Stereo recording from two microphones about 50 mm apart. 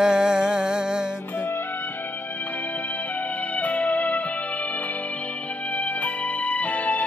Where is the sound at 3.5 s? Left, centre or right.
Left.